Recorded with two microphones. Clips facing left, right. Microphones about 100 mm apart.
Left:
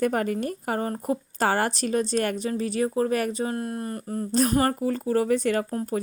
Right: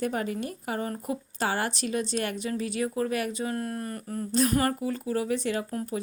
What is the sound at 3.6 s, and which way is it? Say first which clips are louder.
A woman's voice: left 2 dB; 25° left (ahead or behind).